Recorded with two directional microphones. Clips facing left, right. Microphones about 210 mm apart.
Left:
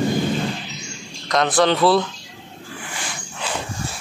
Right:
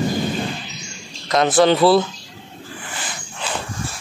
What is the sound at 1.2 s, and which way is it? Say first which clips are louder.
Speech: right 3 dB; 5° right (ahead or behind).